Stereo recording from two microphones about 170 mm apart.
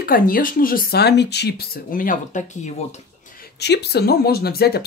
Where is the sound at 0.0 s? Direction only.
60° left (ahead or behind).